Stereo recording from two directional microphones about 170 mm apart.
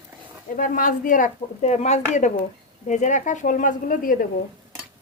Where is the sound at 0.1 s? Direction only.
10° right (ahead or behind).